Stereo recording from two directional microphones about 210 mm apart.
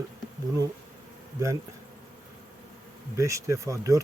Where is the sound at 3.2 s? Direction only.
15° right (ahead or behind).